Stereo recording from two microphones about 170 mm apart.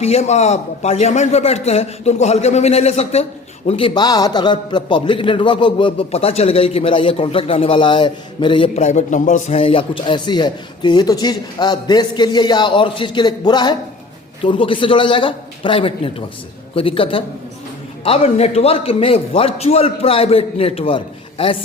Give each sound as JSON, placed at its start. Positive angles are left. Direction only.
{"t": 0.0, "sound": "a man's voice", "side_deg": 40}